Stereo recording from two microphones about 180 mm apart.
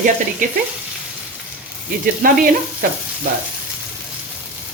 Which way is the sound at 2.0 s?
50° right (ahead or behind).